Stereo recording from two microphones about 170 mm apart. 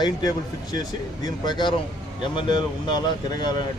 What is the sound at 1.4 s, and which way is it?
Speech, 25° left (ahead or behind).